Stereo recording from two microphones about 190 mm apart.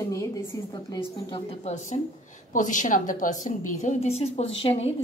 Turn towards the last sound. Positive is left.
turn(degrees=30)  # may be behind; listen again after turning